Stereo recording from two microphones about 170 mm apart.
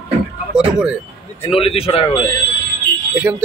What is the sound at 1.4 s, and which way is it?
Speech, 35° left (ahead or behind).